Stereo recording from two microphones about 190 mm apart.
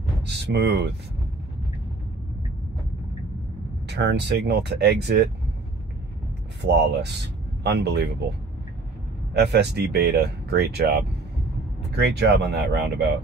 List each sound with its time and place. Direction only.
0.2 s speech: 60° right (ahead or behind)
3.8 s speech: 65° right (ahead or behind)
6.6 s speech: 65° right (ahead or behind)
9.3 s speech: 60° right (ahead or behind)